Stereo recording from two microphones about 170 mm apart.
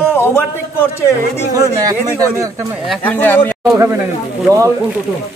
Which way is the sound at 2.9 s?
10° left (ahead or behind).